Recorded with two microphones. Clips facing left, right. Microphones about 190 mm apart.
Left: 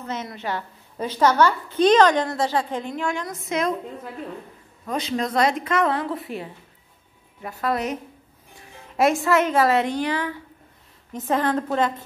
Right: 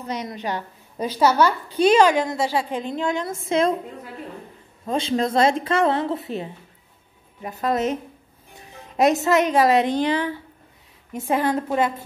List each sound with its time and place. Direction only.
0.0 s a woman's voice: 15° right (ahead or behind)
2.9 s a woman's voice: 20° right (ahead or behind)
4.8 s a woman's voice: 30° right (ahead or behind)
11.1 s a woman's voice: 10° right (ahead or behind)